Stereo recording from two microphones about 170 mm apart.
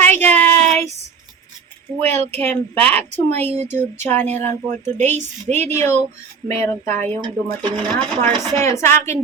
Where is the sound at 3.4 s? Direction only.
40° right (ahead or behind).